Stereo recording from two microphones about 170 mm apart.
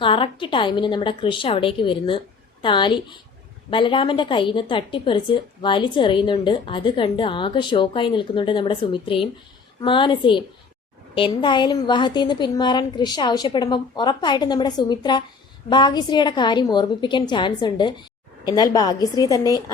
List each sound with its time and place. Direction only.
0.0 s a woman's voice: 30° left (ahead or behind)